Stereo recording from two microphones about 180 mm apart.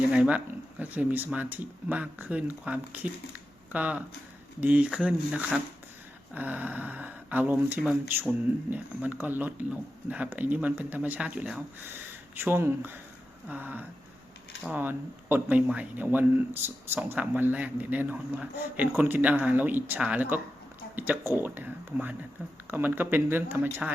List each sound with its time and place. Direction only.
0.1 s speech: 5° right (ahead or behind)